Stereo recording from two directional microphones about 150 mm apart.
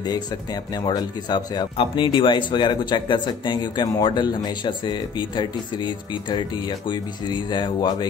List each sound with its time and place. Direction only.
0.8 s speech: 30° left (ahead or behind)
6.9 s speech: 30° left (ahead or behind)